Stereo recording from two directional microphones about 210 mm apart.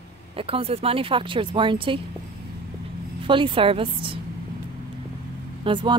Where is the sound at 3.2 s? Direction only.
25° right (ahead or behind).